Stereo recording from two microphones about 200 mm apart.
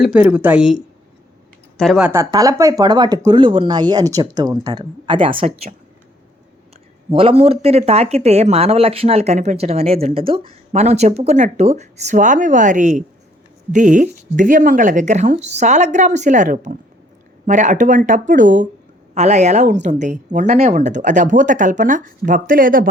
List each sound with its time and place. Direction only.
0.0 s speech: 5° right (ahead or behind)
1.8 s speech: centre (ahead or behind)
2.3 s speech: 15° right (ahead or behind)
7.1 s speech: 25° right (ahead or behind); by 22.9 s 45° right (ahead or behind)